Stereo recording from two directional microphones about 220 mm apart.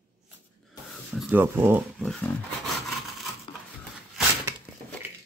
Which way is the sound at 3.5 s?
20° left (ahead or behind).